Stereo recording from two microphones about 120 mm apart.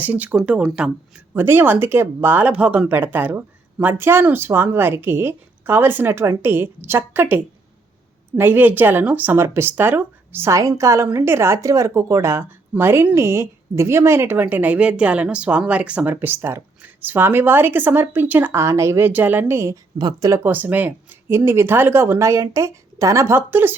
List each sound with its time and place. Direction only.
0.0 s a woman's voice: 15° right (ahead or behind)
1.3 s a woman's voice: 20° right (ahead or behind)